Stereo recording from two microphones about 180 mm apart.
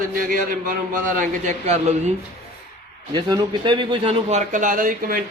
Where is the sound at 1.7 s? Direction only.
35° right (ahead or behind).